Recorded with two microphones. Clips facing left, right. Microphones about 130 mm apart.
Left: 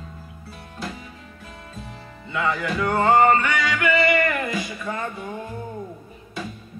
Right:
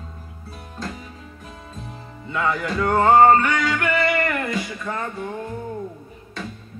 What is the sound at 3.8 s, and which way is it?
Music, 15° left (ahead or behind).